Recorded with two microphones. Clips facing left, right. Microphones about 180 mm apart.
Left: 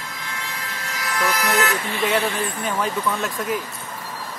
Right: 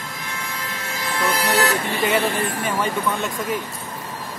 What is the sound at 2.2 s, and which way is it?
Speech, 60° right (ahead or behind).